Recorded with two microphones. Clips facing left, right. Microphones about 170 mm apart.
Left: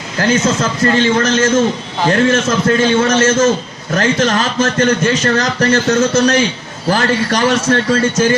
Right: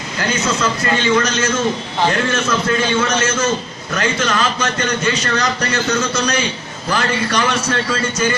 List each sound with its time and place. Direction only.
0.2 s a man's voice: 45° left (ahead or behind)